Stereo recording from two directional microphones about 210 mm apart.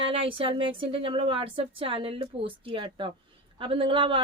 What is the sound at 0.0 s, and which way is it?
A woman's voice, 25° right (ahead or behind).